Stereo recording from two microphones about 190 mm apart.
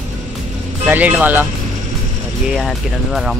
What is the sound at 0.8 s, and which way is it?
Speech, 5° right (ahead or behind).